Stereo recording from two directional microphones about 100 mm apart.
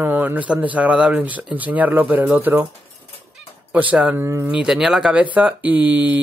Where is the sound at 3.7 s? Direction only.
15° right (ahead or behind).